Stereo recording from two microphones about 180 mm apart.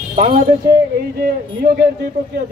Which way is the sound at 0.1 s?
40° right (ahead or behind).